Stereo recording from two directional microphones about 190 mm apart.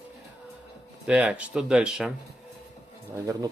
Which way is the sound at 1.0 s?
5° right (ahead or behind).